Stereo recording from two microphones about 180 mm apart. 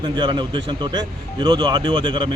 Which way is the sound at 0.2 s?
25° right (ahead or behind).